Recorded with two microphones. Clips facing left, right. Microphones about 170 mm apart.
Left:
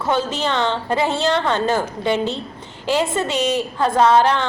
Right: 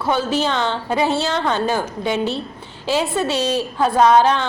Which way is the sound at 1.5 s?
10° right (ahead or behind).